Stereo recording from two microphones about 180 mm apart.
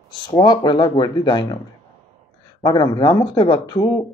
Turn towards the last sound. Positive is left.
turn(degrees=20)  # may be behind; listen again after turning